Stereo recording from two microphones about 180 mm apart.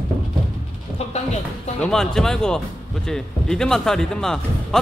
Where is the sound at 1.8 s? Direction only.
5° left (ahead or behind).